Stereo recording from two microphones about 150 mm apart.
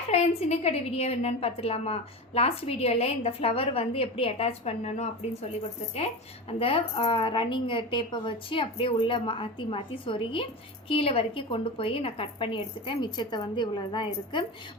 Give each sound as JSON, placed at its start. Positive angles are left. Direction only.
{"t": 0.1, "sound": "a woman's voice", "side_deg": 45}
{"t": 6.5, "sound": "a woman's voice", "side_deg": 40}